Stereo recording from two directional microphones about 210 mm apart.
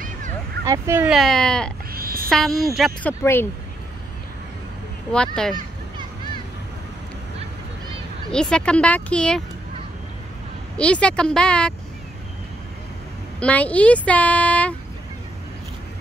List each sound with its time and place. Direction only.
0.7 s a woman's voice: 10° right (ahead or behind)
1.9 s a sound: 45° right (ahead or behind)
2.2 s a woman's voice: centre (ahead or behind)
5.1 s a woman's voice: 5° left (ahead or behind)
8.3 s a woman's voice: 5° left (ahead or behind)
10.8 s a woman's voice: 5° left (ahead or behind)
13.4 s speech: 5° left (ahead or behind)